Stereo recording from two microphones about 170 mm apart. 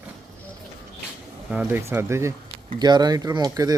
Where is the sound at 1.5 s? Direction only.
10° right (ahead or behind).